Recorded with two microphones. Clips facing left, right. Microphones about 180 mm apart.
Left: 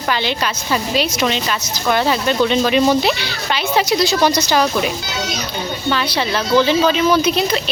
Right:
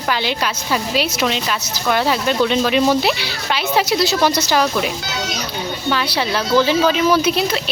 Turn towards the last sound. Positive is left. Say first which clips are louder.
# left 1 dB
turn(degrees=-5)  # may be behind; listen again after turning